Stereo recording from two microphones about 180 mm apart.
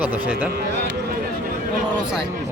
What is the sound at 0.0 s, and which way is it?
Speech, 5° right (ahead or behind).